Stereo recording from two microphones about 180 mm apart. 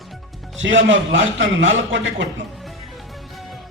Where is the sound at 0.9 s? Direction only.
90° right.